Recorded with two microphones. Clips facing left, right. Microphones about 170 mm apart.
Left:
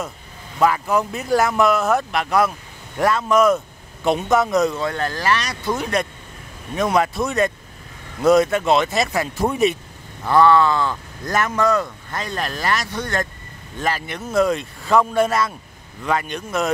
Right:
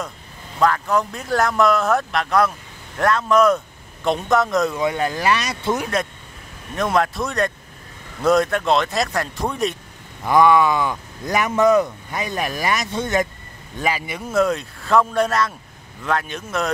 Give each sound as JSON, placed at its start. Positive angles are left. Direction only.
{"t": 0.6, "sound": "speech", "side_deg": 10}
{"t": 4.7, "sound": "speech", "side_deg": -15}
{"t": 5.8, "sound": "speech", "side_deg": 0}
{"t": 10.2, "sound": "speech", "side_deg": -15}
{"t": 13.7, "sound": "speech", "side_deg": -10}